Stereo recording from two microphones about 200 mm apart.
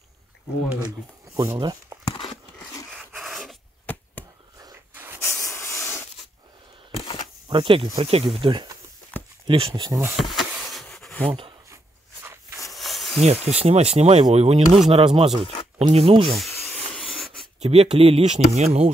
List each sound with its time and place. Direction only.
0.8 s speech: 15° right (ahead or behind)
2.0 s a sound: 25° left (ahead or behind)
3.1 s rub: centre (ahead or behind)
4.6 s a sound: 10° right (ahead or behind)
5.2 s hiss: 15° left (ahead or behind)
7.4 s speech: 25° right (ahead or behind)
10.1 s a sound: centre (ahead or behind)
11.2 s speech: 25° right (ahead or behind)
12.7 s snake: centre (ahead or behind)
13.5 s speech: 30° right (ahead or behind)
16.9 s rub: 5° left (ahead or behind)
17.6 s speech: 30° right (ahead or behind)